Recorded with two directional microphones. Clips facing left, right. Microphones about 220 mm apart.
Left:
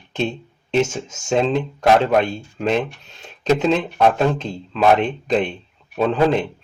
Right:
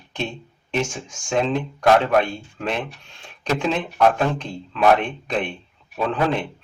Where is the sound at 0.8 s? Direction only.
20° left (ahead or behind).